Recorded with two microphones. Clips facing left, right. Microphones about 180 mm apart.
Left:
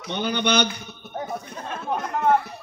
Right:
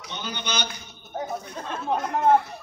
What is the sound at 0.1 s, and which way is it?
Speech, 60° left (ahead or behind).